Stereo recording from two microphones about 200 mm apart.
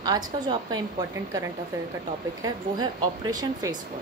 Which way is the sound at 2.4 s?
20° right (ahead or behind).